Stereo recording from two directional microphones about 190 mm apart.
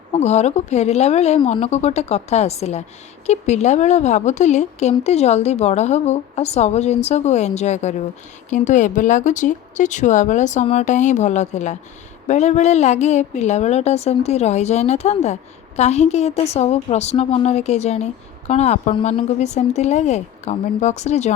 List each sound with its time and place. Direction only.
0.1 s a woman's voice: 35° left (ahead or behind)